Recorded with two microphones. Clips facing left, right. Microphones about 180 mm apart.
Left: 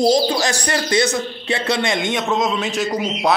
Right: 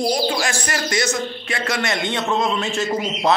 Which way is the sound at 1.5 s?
25° left (ahead or behind).